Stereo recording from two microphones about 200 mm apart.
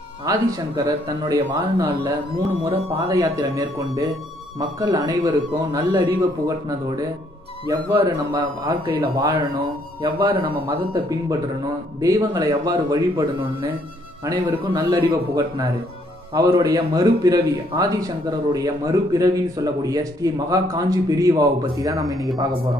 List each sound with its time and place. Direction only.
0.3 s speech: 15° right (ahead or behind)
7.9 s speech: 20° right (ahead or behind)